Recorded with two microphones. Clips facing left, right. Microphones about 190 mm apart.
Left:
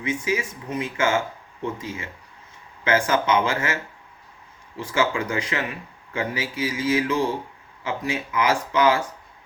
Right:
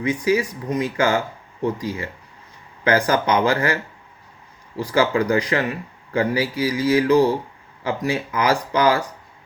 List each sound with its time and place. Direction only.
0.0 s speech: 40° right (ahead or behind)
3.1 s speech: 40° right (ahead or behind)
4.8 s speech: 40° right (ahead or behind)